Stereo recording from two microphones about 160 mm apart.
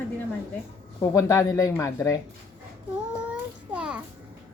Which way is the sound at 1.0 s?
20° left (ahead or behind).